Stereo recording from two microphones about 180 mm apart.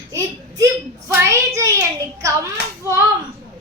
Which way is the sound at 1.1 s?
15° right (ahead or behind).